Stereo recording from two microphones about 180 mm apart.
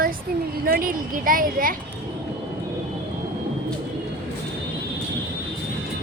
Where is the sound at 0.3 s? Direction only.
55° right (ahead or behind).